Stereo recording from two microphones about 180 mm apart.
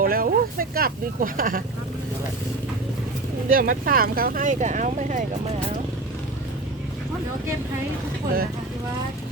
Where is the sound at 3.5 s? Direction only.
50° right (ahead or behind).